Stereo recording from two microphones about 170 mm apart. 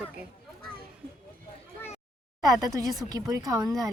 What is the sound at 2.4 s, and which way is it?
Speech, 20° right (ahead or behind).